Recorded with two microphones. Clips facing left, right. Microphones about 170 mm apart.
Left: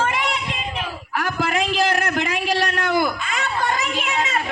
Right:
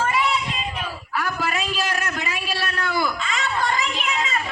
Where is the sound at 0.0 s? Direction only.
65° left (ahead or behind).